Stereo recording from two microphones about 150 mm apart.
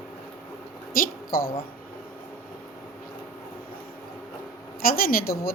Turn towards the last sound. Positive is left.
turn(degrees=85)